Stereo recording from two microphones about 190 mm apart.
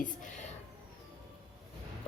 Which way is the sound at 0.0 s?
40° left (ahead or behind).